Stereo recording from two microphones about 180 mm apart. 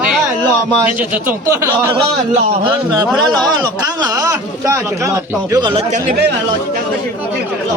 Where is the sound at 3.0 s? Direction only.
Centre (ahead or behind).